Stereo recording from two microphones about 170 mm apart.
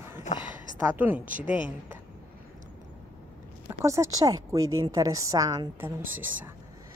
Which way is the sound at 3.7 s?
15° right (ahead or behind).